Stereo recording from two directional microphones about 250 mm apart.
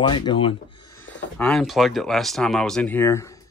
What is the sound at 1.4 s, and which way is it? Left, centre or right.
Speech, centre.